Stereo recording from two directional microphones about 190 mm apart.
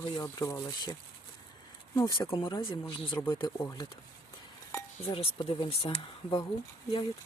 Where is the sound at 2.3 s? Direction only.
25° left (ahead or behind).